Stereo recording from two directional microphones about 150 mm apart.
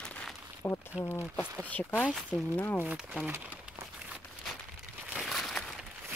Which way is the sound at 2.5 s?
15° left (ahead or behind).